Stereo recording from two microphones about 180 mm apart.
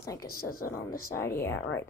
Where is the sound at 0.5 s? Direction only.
55° left (ahead or behind).